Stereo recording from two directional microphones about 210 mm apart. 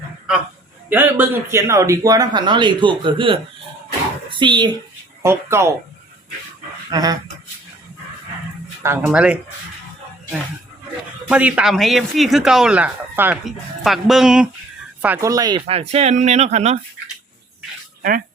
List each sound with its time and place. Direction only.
0.9 s a man's voice: 10° right (ahead or behind)
6.9 s a man's voice: 15° right (ahead or behind)
8.8 s speech: 10° right (ahead or behind)
11.3 s speech: 5° right (ahead or behind); by 16.8 s 30° right (ahead or behind)